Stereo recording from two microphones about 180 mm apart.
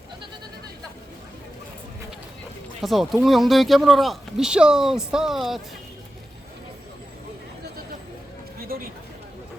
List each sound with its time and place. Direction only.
2.8 s speech: centre (ahead or behind)
8.7 s speech: 55° right (ahead or behind)